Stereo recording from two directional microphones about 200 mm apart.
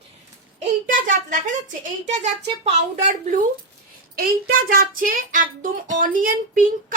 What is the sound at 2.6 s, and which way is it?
A woman's voice, 35° right (ahead or behind).